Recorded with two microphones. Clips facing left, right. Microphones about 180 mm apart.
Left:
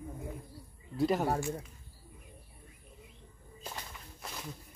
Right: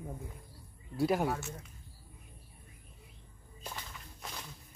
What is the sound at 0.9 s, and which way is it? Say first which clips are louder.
Speech: left 1 dB; 10° right (ahead or behind).